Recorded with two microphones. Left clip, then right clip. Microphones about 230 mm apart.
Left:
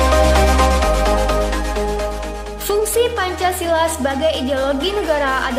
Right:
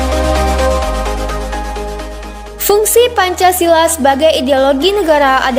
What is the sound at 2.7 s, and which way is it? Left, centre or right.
Speech, right.